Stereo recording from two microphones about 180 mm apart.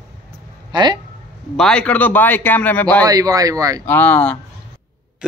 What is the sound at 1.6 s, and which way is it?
A man's voice, 5° left (ahead or behind).